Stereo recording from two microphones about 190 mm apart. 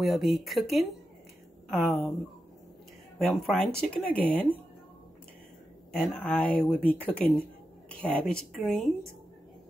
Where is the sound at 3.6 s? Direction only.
5° left (ahead or behind).